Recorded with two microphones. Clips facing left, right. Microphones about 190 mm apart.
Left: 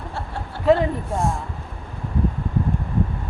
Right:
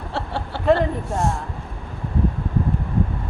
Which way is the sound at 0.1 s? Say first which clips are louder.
Right 8 dB; 75° right (ahead or behind).